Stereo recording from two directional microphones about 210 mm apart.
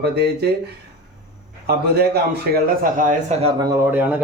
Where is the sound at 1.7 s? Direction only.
50° right (ahead or behind).